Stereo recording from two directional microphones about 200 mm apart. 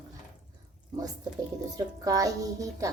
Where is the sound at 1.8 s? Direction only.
15° right (ahead or behind).